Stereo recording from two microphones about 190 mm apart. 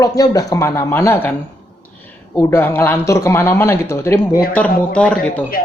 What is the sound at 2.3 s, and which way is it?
A man's voice, 10° left (ahead or behind).